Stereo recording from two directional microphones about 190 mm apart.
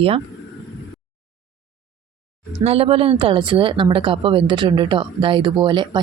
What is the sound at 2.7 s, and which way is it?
Speech, 30° right (ahead or behind).